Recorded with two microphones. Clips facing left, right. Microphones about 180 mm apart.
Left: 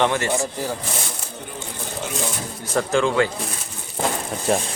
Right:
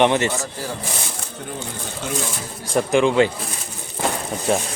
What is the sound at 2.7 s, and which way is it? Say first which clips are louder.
Speech: right 3 dB; 15° right (ahead or behind).